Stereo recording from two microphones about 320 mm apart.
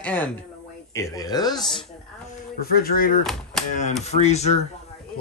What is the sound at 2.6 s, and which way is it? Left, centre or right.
Speech, left.